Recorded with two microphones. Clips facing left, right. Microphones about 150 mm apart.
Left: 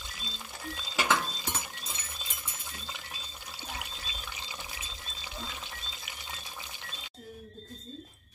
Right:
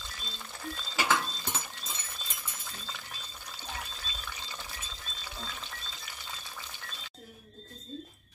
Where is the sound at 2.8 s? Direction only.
15° left (ahead or behind).